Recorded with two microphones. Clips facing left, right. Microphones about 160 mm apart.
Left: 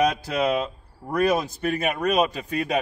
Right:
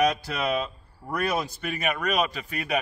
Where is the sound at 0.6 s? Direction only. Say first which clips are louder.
Left 3 dB; 20° left (ahead or behind).